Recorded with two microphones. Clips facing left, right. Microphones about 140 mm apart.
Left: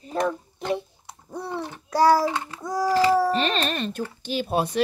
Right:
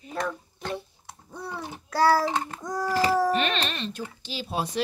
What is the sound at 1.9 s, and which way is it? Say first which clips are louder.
Speech: left 3 dB; 20° left (ahead or behind).